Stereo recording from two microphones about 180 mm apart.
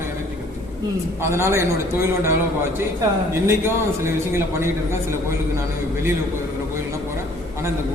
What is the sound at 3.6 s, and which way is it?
A man's voice, 15° right (ahead or behind).